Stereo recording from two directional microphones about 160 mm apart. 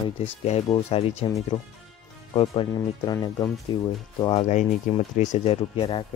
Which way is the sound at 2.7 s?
25° left (ahead or behind).